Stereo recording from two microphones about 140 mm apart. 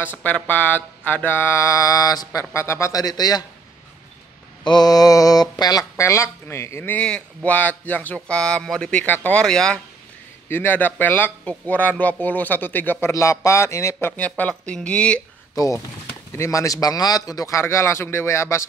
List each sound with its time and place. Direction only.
0.0 s mantra: 15° left (ahead or behind); by 3.4 s 30° left (ahead or behind)
4.6 s speech: 30° left (ahead or behind); by 13.1 s 15° left (ahead or behind)
13.1 s mantra: 20° left (ahead or behind)
14.0 s speech: 10° left (ahead or behind)
15.5 s speech: 25° left (ahead or behind)
16.3 s mantra: 20° left (ahead or behind)